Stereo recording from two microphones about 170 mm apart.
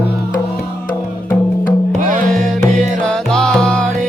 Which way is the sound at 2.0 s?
50° right (ahead or behind).